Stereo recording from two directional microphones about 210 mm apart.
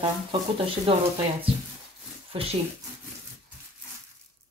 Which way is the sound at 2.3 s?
25° right (ahead or behind).